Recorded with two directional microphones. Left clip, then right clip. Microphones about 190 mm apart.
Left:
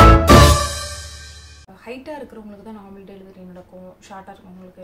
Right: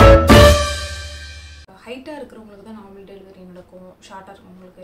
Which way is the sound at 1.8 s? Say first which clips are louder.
Even; 5° right (ahead or behind).